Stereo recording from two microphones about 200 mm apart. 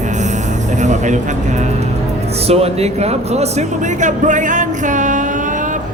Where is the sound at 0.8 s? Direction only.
35° right (ahead or behind).